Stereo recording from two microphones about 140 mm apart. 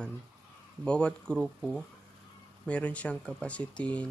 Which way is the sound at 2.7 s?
10° left (ahead or behind).